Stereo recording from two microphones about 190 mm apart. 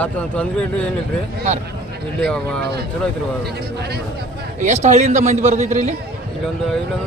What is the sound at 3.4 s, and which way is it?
Speech, 55° right (ahead or behind).